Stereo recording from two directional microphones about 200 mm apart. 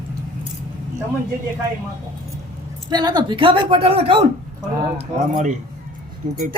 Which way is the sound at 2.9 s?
20° right (ahead or behind).